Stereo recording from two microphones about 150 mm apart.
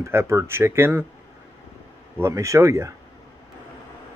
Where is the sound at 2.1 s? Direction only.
20° right (ahead or behind).